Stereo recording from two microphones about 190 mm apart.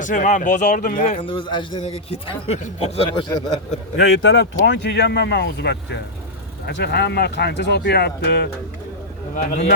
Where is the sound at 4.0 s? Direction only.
70° left (ahead or behind).